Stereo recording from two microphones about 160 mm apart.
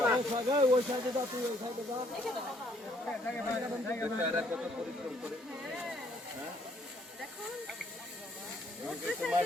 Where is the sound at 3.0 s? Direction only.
5° left (ahead or behind).